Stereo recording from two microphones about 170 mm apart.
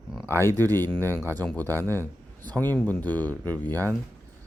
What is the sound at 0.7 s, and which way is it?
Speech, 10° left (ahead or behind).